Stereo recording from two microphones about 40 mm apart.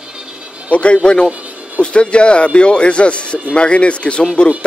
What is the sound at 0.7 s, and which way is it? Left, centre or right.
A man's voice, left.